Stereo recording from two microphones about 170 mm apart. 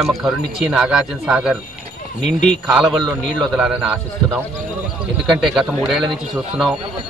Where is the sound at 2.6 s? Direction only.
5° right (ahead or behind).